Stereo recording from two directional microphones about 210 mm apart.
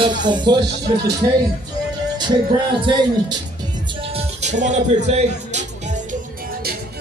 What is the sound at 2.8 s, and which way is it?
Music, 20° right (ahead or behind).